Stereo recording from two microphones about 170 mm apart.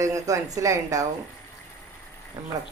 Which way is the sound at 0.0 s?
20° right (ahead or behind).